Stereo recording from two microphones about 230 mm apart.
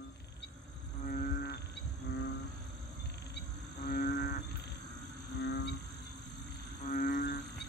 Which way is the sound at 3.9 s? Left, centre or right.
Left.